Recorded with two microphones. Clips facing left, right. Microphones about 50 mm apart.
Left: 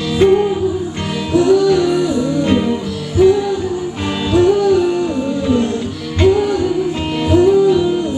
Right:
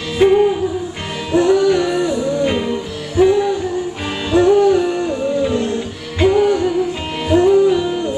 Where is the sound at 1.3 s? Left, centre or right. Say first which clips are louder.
Left 1 dB; right; by 3.3 s centre.